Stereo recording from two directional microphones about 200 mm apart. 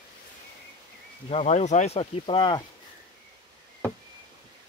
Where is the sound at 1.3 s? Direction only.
30° left (ahead or behind).